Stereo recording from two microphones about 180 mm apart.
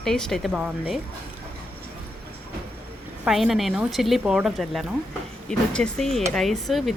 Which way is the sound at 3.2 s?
Centre (ahead or behind).